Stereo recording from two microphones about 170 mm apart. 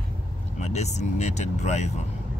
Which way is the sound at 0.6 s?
40° left (ahead or behind).